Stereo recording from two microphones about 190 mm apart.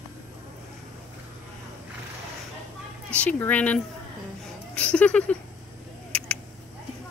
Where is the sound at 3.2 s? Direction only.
10° left (ahead or behind).